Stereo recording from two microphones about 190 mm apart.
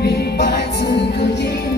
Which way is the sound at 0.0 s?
60° left (ahead or behind).